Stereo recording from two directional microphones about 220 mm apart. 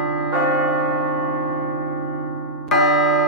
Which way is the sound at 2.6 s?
Centre (ahead or behind).